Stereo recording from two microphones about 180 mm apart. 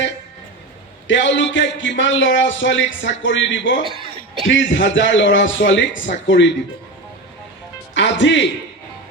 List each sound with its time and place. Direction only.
1.0 s a man's voice: 90° left
7.9 s speech: 90° left